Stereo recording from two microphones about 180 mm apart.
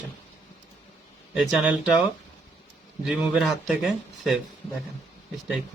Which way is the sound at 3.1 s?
5° right (ahead or behind).